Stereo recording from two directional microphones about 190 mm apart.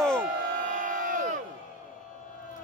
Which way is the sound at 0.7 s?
45° right (ahead or behind).